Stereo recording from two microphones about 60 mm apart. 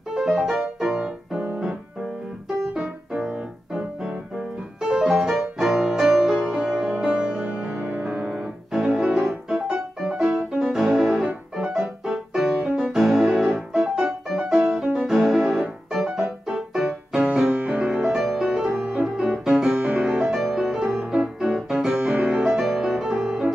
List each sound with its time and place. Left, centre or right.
0.1 s piano: centre
2.7 s music: centre
4.8 s music: centre
8.3 s piano: centre
10.3 s music: centre
11.2 s music: centre
12.0 s piano: centre
15.0 s music: centre
17.5 s music: right
17.8 s music: centre